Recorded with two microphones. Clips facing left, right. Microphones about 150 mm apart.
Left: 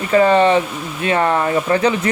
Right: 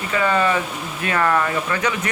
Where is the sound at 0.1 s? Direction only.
35° left (ahead or behind).